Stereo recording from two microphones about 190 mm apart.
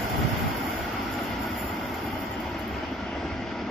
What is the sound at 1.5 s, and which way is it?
Vehicle, centre (ahead or behind).